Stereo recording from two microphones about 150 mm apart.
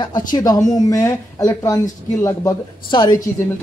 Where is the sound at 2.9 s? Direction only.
30° left (ahead or behind).